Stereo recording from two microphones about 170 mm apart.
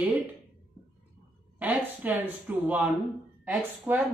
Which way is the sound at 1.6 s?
10° right (ahead or behind).